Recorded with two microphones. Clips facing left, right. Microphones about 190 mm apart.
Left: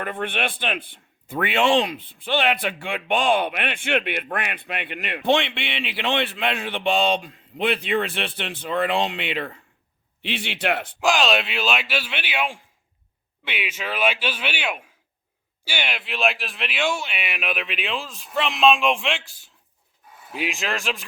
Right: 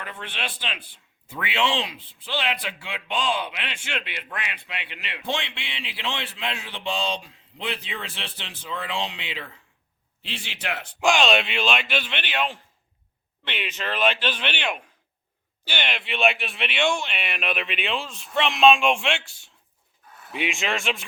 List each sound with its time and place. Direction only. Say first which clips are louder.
0.0 s speech: left 8 dB; 55° left (ahead or behind)
11.0 s speech: right 1 dB; centre (ahead or behind)